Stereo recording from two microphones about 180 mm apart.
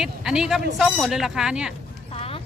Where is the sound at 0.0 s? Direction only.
5° right (ahead or behind).